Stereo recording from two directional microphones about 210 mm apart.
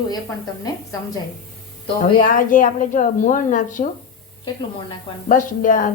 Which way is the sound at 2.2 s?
40° left (ahead or behind).